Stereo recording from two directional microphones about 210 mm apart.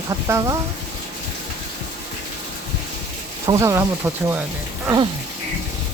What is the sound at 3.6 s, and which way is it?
Speech, 15° right (ahead or behind).